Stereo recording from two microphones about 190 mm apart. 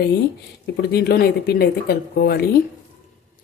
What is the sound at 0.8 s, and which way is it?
Speech, 60° left (ahead or behind).